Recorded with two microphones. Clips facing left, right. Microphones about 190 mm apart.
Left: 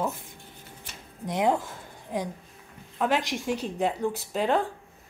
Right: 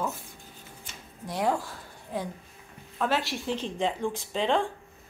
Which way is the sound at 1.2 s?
20° left (ahead or behind).